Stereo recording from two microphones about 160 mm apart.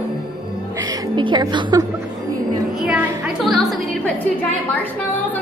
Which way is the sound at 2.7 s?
5° right (ahead or behind).